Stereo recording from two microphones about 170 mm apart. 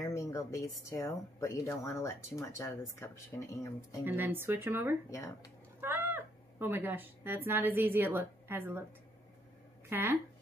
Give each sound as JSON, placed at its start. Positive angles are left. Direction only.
{"t": 0.0, "sound": "a sound", "side_deg": 20}
{"t": 0.8, "sound": "speech", "side_deg": 20}
{"t": 4.0, "sound": "speech", "side_deg": -10}
{"t": 9.8, "sound": "speech", "side_deg": -10}